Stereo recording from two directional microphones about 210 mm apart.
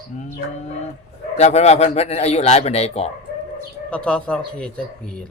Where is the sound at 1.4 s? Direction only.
30° left (ahead or behind).